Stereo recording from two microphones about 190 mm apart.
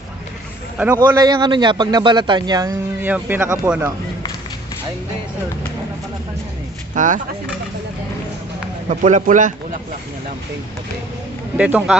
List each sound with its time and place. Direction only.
1.0 s speech: 20° right (ahead or behind)
6.9 s a man's voice: 40° right (ahead or behind)
8.9 s a man's voice: 40° right (ahead or behind)
11.5 s speech: 5° right (ahead or behind)